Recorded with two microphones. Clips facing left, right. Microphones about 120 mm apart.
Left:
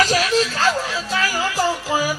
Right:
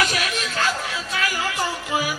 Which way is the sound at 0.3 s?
30° left (ahead or behind).